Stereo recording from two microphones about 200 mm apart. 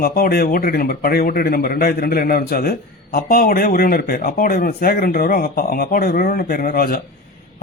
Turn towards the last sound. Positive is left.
turn(degrees=45)  # may be behind; listen again after turning